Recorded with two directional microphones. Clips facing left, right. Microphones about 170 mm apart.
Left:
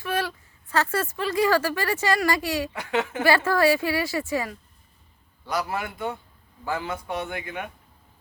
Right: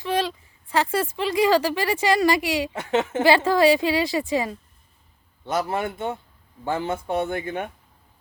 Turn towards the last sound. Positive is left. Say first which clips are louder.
# right 6 dB
turn(degrees=-30)  # may be behind; listen again after turning